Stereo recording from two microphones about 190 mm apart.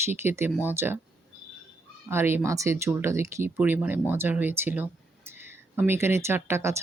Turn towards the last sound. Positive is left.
turn(degrees=-15)  # may be behind; listen again after turning